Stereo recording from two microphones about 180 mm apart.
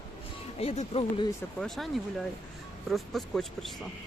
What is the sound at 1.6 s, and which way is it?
Speech, centre (ahead or behind).